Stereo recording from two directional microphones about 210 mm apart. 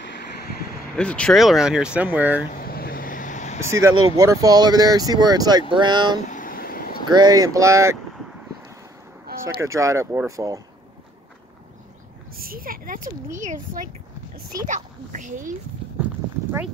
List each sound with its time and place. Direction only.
0.9 s speech: 5° left (ahead or behind)
2.5 s vehicle: 45° left (ahead or behind)
4.0 s speech: 15° right (ahead or behind)
6.2 s vehicle: 40° left (ahead or behind)
7.1 s speech: 20° right (ahead or behind)
9.4 s speech: 15° right (ahead or behind)
12.4 s a child's voice: 45° right (ahead or behind)